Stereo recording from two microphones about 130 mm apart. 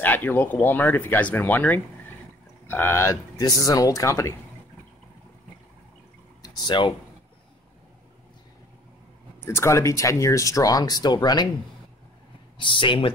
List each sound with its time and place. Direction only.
0.0 s speech: 15° left (ahead or behind)
6.4 s a sound: 35° left (ahead or behind)
9.4 s speech: 20° left (ahead or behind)
12.5 s speech: 40° left (ahead or behind)